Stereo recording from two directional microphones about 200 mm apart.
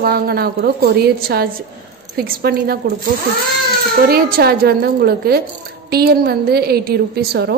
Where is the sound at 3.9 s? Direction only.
50° right (ahead or behind).